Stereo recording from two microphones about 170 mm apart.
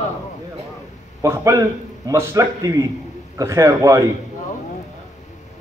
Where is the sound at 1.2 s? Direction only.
15° right (ahead or behind).